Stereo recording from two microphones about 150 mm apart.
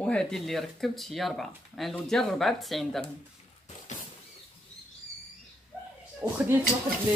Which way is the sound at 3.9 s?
50° left (ahead or behind).